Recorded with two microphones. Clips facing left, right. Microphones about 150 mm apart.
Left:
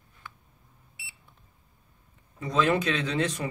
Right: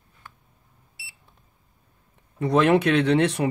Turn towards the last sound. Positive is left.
turn(degrees=-65)  # may be behind; listen again after turning